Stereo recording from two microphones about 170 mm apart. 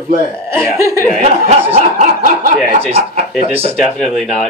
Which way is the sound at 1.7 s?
50° right (ahead or behind).